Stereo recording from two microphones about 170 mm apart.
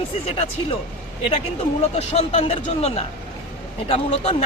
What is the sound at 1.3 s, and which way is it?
Speech, 40° left (ahead or behind).